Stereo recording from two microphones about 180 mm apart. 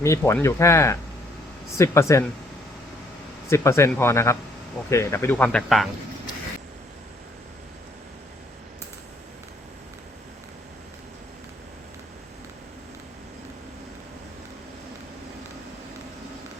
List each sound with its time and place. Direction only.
0.0 s speech: 15° left (ahead or behind)
3.5 s speech: 15° left (ahead or behind)